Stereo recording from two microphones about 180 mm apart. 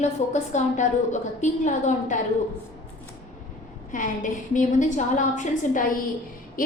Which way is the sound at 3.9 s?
45° left (ahead or behind).